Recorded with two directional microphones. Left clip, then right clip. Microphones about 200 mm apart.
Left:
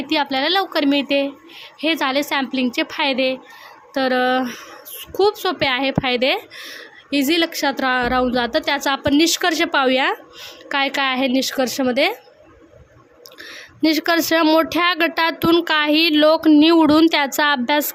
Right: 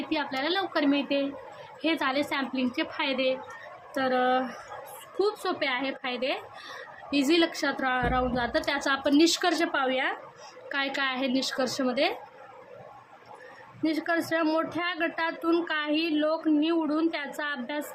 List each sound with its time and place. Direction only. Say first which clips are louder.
0.1 s a woman's voice: left 11 dB; 55° left (ahead or behind)
10.7 s a woman's voice: left 10 dB; 40° left (ahead or behind)
13.8 s speech: left 11 dB; 50° left (ahead or behind)